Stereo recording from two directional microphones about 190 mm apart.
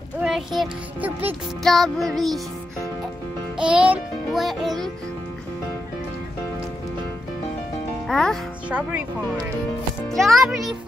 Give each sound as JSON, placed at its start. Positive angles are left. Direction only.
{"t": 0.2, "sound": "a child's voice", "side_deg": 0}
{"t": 3.5, "sound": "music", "side_deg": -5}
{"t": 8.1, "sound": "music", "side_deg": 0}
{"t": 10.1, "sound": "a child's voice", "side_deg": 0}